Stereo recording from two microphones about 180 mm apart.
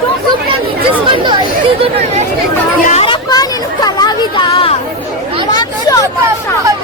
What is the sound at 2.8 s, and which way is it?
Chatter, 35° left (ahead or behind).